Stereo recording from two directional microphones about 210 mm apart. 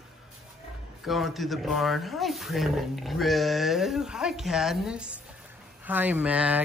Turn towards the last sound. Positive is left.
turn(degrees=-5)  # may be behind; listen again after turning